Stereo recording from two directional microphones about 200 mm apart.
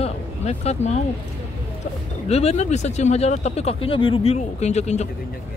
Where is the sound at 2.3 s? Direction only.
30° left (ahead or behind).